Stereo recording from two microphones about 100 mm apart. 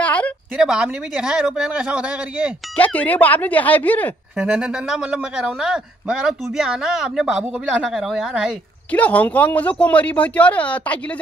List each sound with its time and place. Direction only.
0.0 s a sound: 15° left (ahead or behind)
0.6 s speech: 5° right (ahead or behind)
2.7 s speech: 15° left (ahead or behind)
4.4 s a man's voice: 10° right (ahead or behind)
8.9 s speech: 15° left (ahead or behind)